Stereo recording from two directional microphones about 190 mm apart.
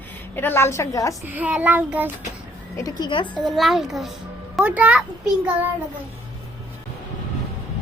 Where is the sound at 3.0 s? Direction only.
25° left (ahead or behind).